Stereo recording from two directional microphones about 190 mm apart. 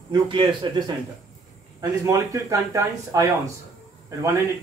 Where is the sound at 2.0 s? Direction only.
15° right (ahead or behind).